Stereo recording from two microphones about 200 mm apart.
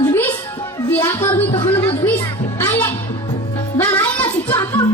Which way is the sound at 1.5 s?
30° left (ahead or behind).